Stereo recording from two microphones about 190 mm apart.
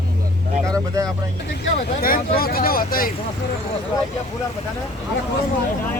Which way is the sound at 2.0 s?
50° left (ahead or behind).